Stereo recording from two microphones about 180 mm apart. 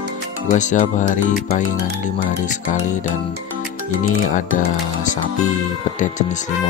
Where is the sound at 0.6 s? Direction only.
45° left (ahead or behind).